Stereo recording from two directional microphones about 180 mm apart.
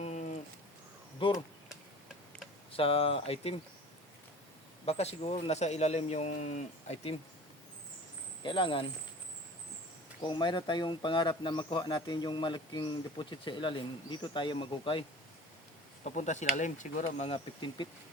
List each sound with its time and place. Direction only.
0.0 s a sound: 40° left (ahead or behind)
1.2 s speech: 30° left (ahead or behind)
2.7 s speech: 30° left (ahead or behind)
4.9 s speech: 35° left (ahead or behind)
8.4 s speech: 30° left (ahead or behind)
10.2 s speech: 25° left (ahead or behind)
16.0 s speech: 40° left (ahead or behind)